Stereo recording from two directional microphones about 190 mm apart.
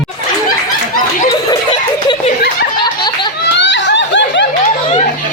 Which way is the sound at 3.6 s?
70° left (ahead or behind).